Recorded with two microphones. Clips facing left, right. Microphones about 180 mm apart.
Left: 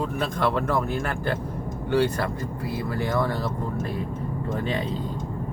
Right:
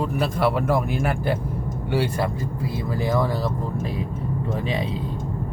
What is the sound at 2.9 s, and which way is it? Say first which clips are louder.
Speech: right 3 dB; 15° right (ahead or behind).